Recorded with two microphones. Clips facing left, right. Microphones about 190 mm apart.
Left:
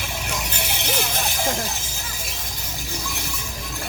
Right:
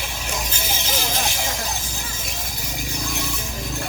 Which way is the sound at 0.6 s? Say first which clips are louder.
Left 1 dB; 65° left (ahead or behind).